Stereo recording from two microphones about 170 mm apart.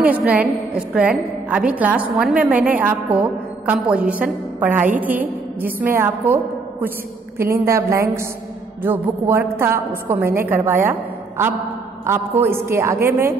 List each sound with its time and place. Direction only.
0.0 s a woman's voice: 10° right (ahead or behind)